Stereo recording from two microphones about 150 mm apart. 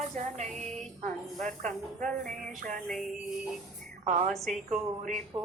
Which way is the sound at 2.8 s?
Centre (ahead or behind).